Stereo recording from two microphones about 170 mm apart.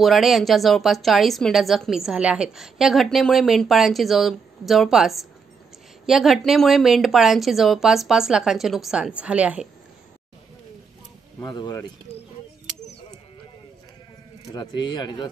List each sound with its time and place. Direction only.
0.0 s speech: centre (ahead or behind)
11.4 s speech: 25° left (ahead or behind)
14.5 s speech: 25° left (ahead or behind)